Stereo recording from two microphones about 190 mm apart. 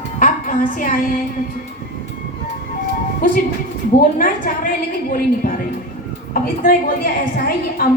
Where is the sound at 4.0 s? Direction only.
45° left (ahead or behind).